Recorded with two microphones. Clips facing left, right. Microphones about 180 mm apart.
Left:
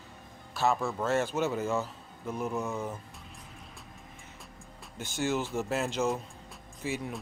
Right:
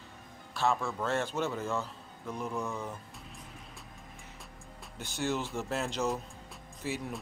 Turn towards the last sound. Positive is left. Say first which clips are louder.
# left 2 dB
turn(degrees=0)  # may be behind; listen again after turning